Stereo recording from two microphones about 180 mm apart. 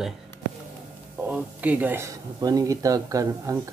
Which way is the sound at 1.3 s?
10° right (ahead or behind).